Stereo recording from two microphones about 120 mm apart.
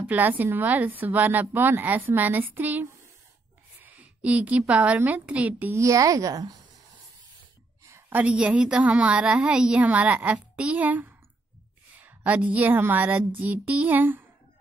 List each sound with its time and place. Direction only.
0.0 s a woman's voice: 15° right (ahead or behind)
5.8 s a woman's voice: 25° right (ahead or behind)
7.8 s a sound: 20° right (ahead or behind)
8.2 s a woman's voice: 10° right (ahead or behind)